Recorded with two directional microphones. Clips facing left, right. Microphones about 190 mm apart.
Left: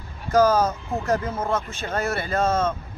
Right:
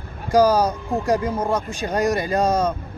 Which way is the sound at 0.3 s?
10° right (ahead or behind).